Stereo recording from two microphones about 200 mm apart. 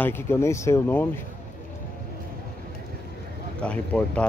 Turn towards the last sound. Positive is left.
turn(degrees=5)  # may be behind; listen again after turning